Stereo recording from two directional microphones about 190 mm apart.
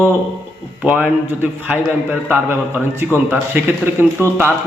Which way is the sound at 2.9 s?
10° right (ahead or behind).